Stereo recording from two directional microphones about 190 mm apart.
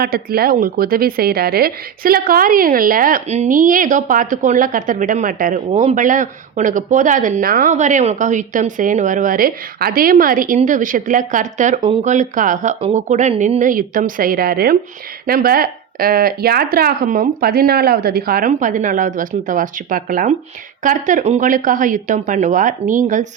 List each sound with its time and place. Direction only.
0.0 s a woman's voice: 55° right (ahead or behind)